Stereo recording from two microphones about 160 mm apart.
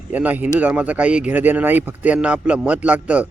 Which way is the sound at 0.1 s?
10° right (ahead or behind).